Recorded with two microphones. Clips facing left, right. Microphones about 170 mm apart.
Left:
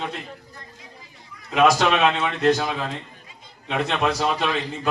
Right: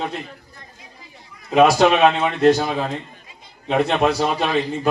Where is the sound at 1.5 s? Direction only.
35° right (ahead or behind).